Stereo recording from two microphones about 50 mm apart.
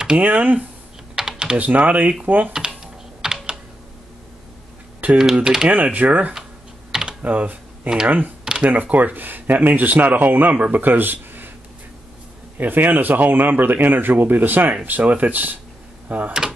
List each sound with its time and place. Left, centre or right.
0.2 s speech: right
1.1 s typing: centre
1.6 s speech: right
2.5 s typing: centre
5.1 s speech: centre
5.7 s speech: right
6.9 s typing: centre
7.2 s computer keyboard: right
8.6 s speech: right
12.5 s speech: right